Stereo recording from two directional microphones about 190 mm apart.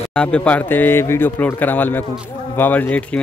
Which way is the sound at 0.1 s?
5° left (ahead or behind).